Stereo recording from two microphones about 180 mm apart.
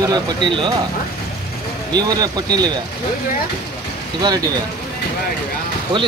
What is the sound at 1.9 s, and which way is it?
Speech, 20° right (ahead or behind).